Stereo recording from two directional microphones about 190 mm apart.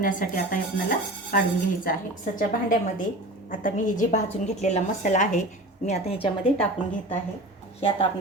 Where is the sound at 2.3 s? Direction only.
45° left (ahead or behind).